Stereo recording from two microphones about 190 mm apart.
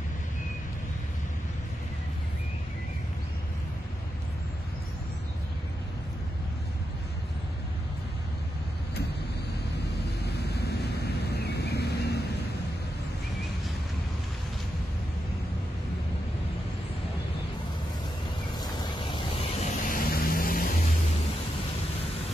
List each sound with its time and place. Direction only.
11.3 s vehicle: 60° left (ahead or behind)
18.6 s a sound: 25° left (ahead or behind)
19.9 s vehicle: 50° left (ahead or behind)